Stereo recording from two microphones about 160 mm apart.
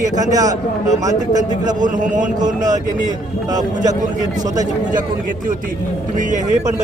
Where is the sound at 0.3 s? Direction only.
20° right (ahead or behind).